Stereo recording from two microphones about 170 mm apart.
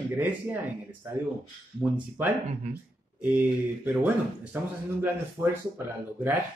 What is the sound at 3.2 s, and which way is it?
Speech, 10° right (ahead or behind).